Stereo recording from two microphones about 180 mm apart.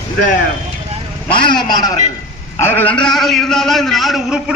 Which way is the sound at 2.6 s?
10° left (ahead or behind).